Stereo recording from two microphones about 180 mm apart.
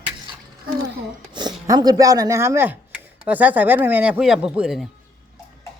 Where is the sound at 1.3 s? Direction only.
25° right (ahead or behind); by 4.9 s 5° right (ahead or behind).